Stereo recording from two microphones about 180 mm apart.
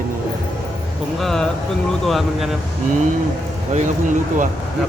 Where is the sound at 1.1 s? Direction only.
Centre (ahead or behind).